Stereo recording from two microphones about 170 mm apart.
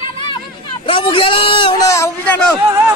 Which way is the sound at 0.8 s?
30° left (ahead or behind).